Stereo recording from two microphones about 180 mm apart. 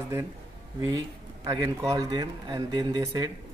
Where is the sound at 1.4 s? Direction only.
20° right (ahead or behind).